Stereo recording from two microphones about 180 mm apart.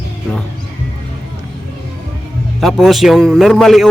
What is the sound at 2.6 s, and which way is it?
Speech, centre (ahead or behind).